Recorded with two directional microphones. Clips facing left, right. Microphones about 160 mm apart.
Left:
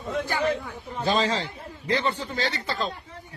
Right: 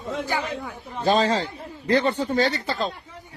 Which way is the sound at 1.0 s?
50° right (ahead or behind).